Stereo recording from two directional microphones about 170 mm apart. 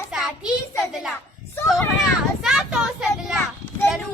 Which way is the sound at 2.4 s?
5° right (ahead or behind).